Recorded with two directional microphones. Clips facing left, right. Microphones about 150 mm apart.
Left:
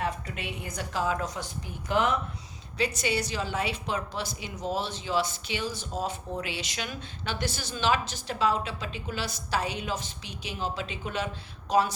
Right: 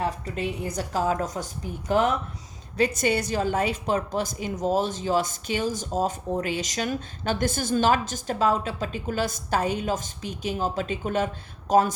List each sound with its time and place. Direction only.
0.0 s a woman's voice: 35° right (ahead or behind)